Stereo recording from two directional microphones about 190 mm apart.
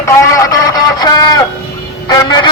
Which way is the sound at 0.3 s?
20° left (ahead or behind).